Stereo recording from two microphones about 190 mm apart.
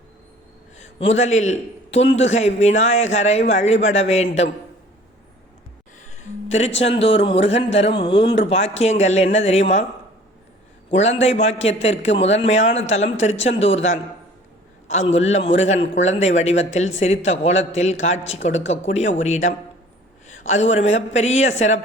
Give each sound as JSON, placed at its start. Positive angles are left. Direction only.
{"t": 1.1, "sound": "speech", "side_deg": 40}
{"t": 6.0, "sound": "speech", "side_deg": 35}
{"t": 10.9, "sound": "speech", "side_deg": 35}
{"t": 14.9, "sound": "speech", "side_deg": 35}
{"t": 20.5, "sound": "speech", "side_deg": 35}